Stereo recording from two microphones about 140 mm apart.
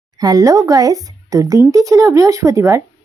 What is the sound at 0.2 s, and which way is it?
Speech, 25° right (ahead or behind).